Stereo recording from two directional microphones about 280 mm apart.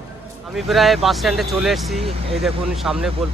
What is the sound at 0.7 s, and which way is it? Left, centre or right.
Speech, centre.